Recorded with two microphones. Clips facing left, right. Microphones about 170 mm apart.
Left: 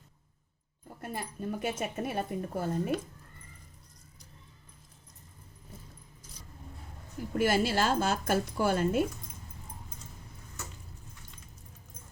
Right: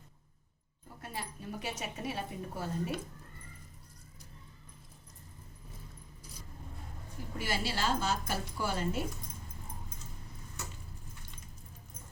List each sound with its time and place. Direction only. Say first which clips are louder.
1.0 s a woman's voice: left 6 dB; 50° left (ahead or behind)
7.3 s a woman's voice: left 9 dB; 50° left (ahead or behind)